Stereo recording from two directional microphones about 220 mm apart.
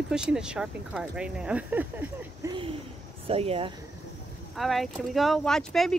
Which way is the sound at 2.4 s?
25° right (ahead or behind).